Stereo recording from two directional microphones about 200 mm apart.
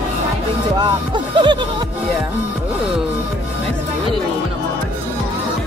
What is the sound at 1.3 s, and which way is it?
Music, 25° right (ahead or behind).